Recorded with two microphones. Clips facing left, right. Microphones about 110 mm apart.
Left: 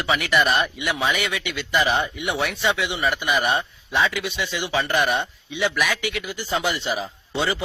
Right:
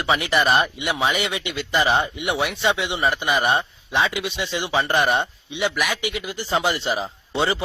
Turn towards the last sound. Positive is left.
turn(degrees=-25)  # may be behind; listen again after turning